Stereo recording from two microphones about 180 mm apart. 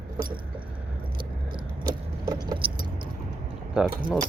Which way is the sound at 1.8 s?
25° right (ahead or behind).